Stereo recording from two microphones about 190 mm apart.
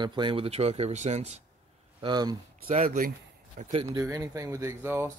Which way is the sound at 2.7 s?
45° right (ahead or behind).